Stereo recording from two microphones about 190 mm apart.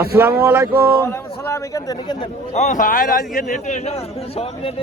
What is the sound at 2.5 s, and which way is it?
A man's voice, 40° left (ahead or behind).